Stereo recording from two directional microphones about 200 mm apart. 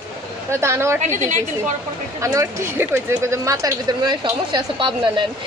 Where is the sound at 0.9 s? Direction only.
35° right (ahead or behind).